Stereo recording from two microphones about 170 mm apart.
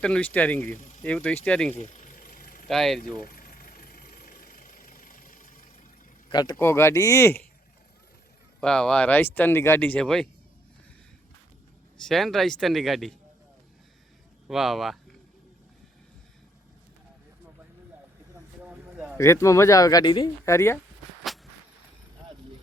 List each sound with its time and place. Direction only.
0.0 s speech: 5° left (ahead or behind)
1.7 s vehicle: 40° left (ahead or behind); by 2.6 s 55° left (ahead or behind)
2.6 s speech: centre (ahead or behind)
3.2 s vehicle: 55° left (ahead or behind)
6.3 s speech: 25° left (ahead or behind)
8.6 s speech: 5° left (ahead or behind)
11.9 s speech: centre (ahead or behind)
14.4 s speech: centre (ahead or behind)
18.6 s a sound: 5° right (ahead or behind)
19.1 s speech: 15° left (ahead or behind)